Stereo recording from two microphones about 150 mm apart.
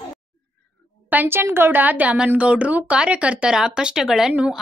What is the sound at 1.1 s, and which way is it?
Speech, 15° right (ahead or behind).